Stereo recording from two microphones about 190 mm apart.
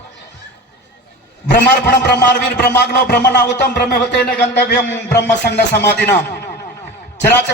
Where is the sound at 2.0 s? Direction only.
60° left (ahead or behind).